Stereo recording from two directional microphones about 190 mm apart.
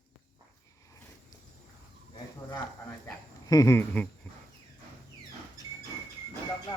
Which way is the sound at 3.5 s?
15° left (ahead or behind).